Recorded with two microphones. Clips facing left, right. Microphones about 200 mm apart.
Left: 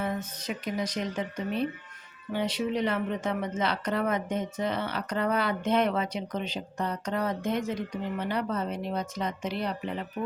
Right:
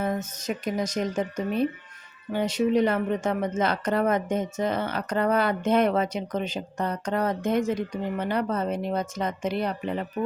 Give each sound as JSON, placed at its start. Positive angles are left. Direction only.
{"t": 0.0, "sound": "speech", "side_deg": -45}